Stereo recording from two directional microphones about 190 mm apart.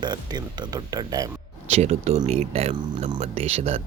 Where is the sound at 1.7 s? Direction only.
35° right (ahead or behind).